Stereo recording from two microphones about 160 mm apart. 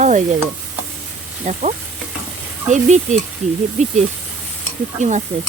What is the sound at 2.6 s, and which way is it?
Stir, 50° right (ahead or behind).